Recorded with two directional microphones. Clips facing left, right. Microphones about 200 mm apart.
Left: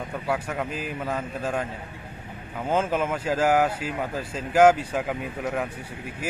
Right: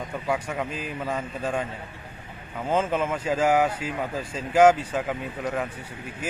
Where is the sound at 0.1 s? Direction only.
5° left (ahead or behind).